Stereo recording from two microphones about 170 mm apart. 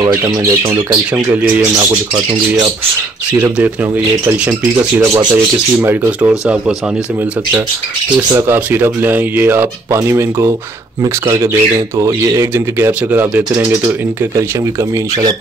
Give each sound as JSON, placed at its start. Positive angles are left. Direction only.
{"t": 0.0, "sound": "speech", "side_deg": -15}
{"t": 3.3, "sound": "speech", "side_deg": -10}
{"t": 8.3, "sound": "speech", "side_deg": -15}